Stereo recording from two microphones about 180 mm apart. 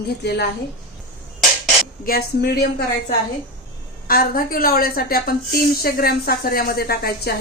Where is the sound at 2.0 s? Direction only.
55° left (ahead or behind).